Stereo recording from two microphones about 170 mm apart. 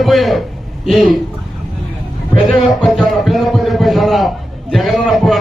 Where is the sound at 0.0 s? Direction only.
Centre (ahead or behind).